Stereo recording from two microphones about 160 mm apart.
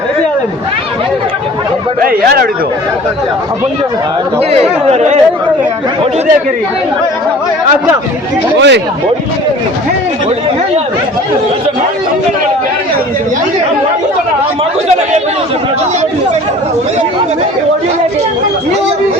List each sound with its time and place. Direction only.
2.0 s speech: 65° right (ahead or behind)
4.4 s speech: 40° right (ahead or behind)
8.5 s speech: 90° right